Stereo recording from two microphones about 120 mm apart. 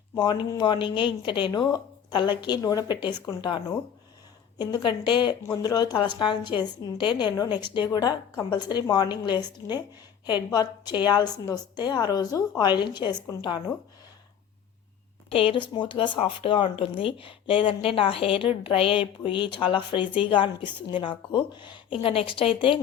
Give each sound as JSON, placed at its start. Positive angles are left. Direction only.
{"t": 0.2, "sound": "a woman's voice", "side_deg": 40}
{"t": 15.3, "sound": "a woman's voice", "side_deg": 50}